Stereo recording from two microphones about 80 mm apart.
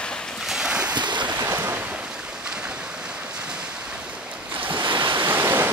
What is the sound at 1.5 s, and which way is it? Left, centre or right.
Waves, right.